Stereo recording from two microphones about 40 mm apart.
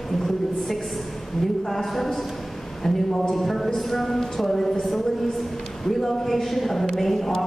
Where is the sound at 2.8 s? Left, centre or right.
Centre.